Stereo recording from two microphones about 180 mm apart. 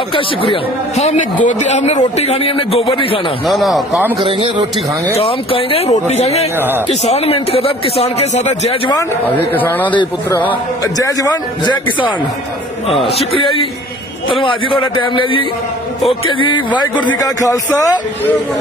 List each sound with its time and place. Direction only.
0.1 s a man's voice: 30° left (ahead or behind)
3.4 s speech: centre (ahead or behind)
4.3 s speech: 30° right (ahead or behind)
5.1 s a man's voice: 30° left (ahead or behind)
9.6 s a man's voice: 10° left (ahead or behind)
13.0 s a man's voice: 35° left (ahead or behind)
14.4 s a man's voice: 30° left (ahead or behind)